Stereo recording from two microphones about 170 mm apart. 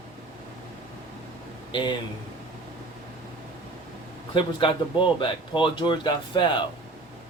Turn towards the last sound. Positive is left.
turn(degrees=30)  # may be behind; listen again after turning